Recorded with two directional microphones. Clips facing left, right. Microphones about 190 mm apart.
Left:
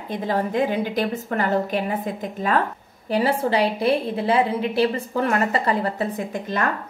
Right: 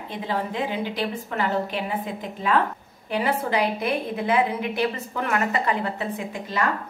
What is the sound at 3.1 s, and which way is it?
A woman's voice, 35° left (ahead or behind).